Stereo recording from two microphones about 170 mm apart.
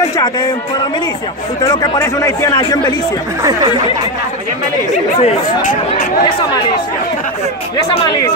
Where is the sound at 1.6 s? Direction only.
20° left (ahead or behind).